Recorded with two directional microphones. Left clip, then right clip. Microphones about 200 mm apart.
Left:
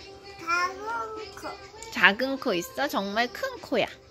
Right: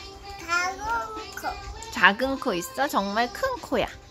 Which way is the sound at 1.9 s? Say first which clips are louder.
Right 1 dB; 5° left (ahead or behind).